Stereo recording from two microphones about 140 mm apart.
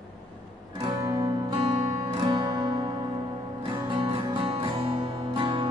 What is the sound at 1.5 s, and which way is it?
Music, 35° right (ahead or behind).